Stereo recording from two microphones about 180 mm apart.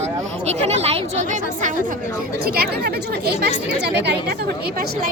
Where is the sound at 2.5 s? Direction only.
60° right (ahead or behind).